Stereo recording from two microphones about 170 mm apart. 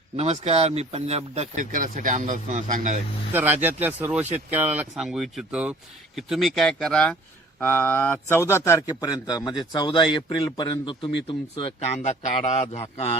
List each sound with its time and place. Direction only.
0.2 s speech: 35° right (ahead or behind)
3.3 s speech: 10° right (ahead or behind); by 11.7 s 30° left (ahead or behind)
12.0 s a man's voice: 40° left (ahead or behind)